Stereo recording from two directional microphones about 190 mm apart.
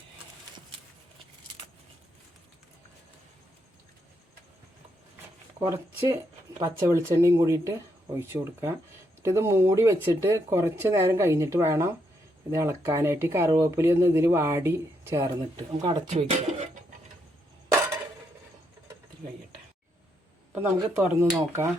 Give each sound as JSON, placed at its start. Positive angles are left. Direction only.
{"t": 5.5, "sound": "speech", "side_deg": -15}
{"t": 15.5, "sound": "speech", "side_deg": -30}
{"t": 20.6, "sound": "speech", "side_deg": -10}